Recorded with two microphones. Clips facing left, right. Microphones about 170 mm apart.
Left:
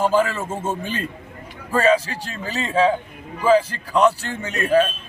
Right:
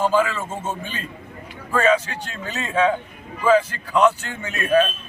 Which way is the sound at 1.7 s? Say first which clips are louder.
Left 1 dB; 35° left (ahead or behind).